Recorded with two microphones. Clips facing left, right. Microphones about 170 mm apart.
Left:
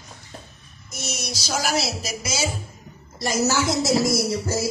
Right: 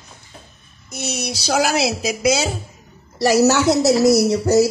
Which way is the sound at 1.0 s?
65° right (ahead or behind).